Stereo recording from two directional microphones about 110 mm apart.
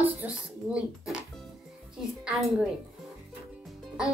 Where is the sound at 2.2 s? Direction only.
5° right (ahead or behind).